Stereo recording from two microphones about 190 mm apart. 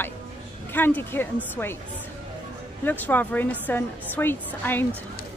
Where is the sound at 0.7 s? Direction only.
10° left (ahead or behind).